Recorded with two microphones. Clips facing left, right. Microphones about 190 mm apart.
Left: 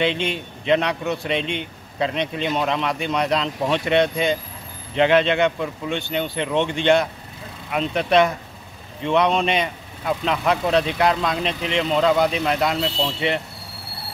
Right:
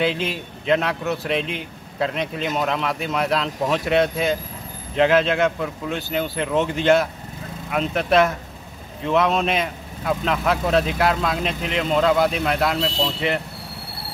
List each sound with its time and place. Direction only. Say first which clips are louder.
0.0 s speech: even; 5° right (ahead or behind)